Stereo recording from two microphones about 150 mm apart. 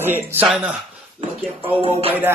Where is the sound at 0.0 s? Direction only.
15° right (ahead or behind).